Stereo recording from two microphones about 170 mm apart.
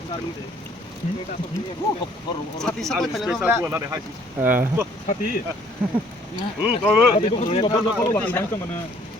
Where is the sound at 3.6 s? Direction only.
15° right (ahead or behind).